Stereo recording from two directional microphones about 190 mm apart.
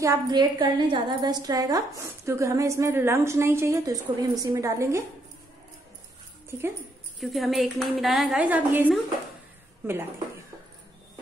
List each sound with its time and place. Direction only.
0.0 s a woman's voice: 20° right (ahead or behind)
7.2 s a woman's voice: centre (ahead or behind)